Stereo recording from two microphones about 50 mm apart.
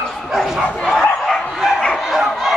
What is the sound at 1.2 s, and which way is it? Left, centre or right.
Dog, centre.